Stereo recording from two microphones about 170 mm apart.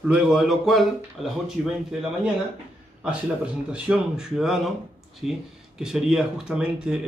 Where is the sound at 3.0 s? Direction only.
5° right (ahead or behind).